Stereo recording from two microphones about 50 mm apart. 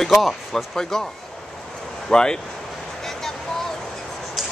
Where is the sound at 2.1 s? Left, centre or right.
Centre.